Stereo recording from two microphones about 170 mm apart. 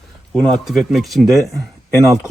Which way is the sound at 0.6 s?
Centre (ahead or behind).